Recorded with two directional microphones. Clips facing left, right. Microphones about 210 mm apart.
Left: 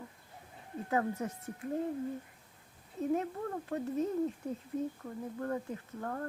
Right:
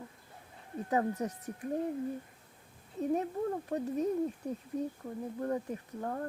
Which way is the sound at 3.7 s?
15° right (ahead or behind).